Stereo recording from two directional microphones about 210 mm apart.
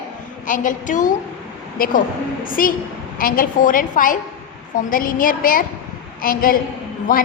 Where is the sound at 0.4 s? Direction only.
40° left (ahead or behind).